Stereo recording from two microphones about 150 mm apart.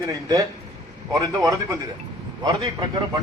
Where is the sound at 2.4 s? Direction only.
30° right (ahead or behind).